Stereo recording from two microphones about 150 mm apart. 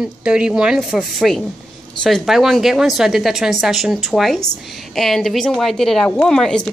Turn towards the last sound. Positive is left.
turn(degrees=5)  # may be behind; listen again after turning